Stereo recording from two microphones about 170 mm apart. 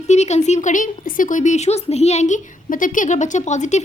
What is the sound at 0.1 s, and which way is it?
A woman's voice, 40° left (ahead or behind).